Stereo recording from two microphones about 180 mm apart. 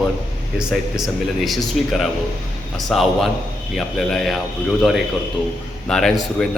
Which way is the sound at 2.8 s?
Centre (ahead or behind).